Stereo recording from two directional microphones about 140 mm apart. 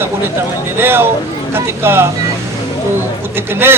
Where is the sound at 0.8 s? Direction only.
15° right (ahead or behind).